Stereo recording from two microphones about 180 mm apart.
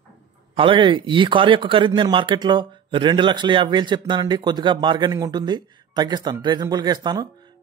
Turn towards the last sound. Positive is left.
turn(degrees=-25)  # may be behind; listen again after turning